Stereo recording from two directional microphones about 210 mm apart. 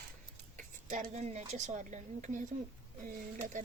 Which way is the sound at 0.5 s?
35° right (ahead or behind).